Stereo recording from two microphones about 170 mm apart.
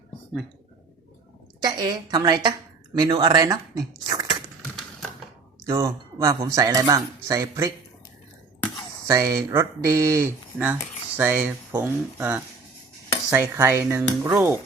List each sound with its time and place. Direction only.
1.6 s a woman's voice: 25° right (ahead or behind)
5.6 s a woman's voice: 15° right (ahead or behind)
9.0 s speech: 20° right (ahead or behind)